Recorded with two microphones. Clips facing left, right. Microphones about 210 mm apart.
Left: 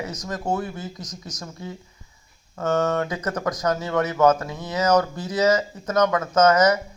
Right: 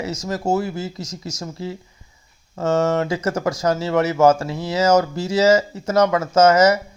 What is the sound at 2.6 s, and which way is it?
A man's voice, 25° right (ahead or behind).